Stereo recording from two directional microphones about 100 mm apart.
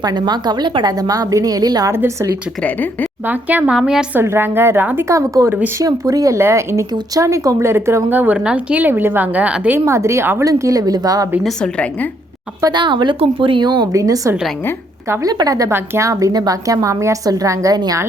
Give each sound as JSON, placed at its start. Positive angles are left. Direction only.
{"t": 0.0, "sound": "a woman's voice", "side_deg": -45}
{"t": 1.9, "sound": "speech", "side_deg": -25}
{"t": 2.6, "sound": "a woman's voice", "side_deg": 15}
{"t": 3.2, "sound": "speech", "side_deg": -15}
{"t": 3.8, "sound": "a woman's voice", "side_deg": -5}
{"t": 4.1, "sound": "speech", "side_deg": -25}
{"t": 5.5, "sound": "speech", "side_deg": -20}
{"t": 5.8, "sound": "speech", "side_deg": -35}
{"t": 9.8, "sound": "a woman's voice", "side_deg": -30}
{"t": 11.4, "sound": "a woman's voice", "side_deg": 10}
{"t": 12.6, "sound": "speech", "side_deg": -50}
{"t": 13.1, "sound": "speech", "side_deg": -65}
{"t": 13.9, "sound": "a woman's voice", "side_deg": -35}